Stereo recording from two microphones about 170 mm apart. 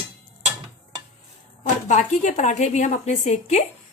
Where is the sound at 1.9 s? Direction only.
45° left (ahead or behind).